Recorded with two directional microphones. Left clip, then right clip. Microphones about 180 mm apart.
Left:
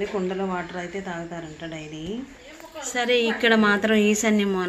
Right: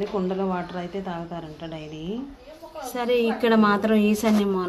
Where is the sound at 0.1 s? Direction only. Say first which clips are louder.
Right 1 dB; centre (ahead or behind).